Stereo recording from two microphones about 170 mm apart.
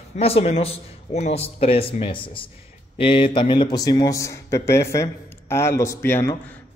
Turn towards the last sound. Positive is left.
turn(degrees=15)  # may be behind; listen again after turning